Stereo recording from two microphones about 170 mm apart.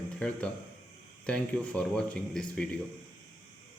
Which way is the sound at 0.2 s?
5° left (ahead or behind).